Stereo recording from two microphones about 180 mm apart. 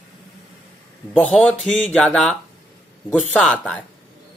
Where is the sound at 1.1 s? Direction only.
10° left (ahead or behind).